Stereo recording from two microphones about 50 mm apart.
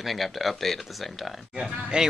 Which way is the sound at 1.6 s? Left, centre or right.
Centre.